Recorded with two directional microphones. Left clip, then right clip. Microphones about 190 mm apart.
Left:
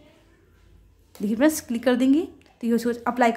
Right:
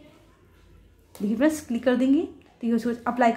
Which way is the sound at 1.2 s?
20° left (ahead or behind).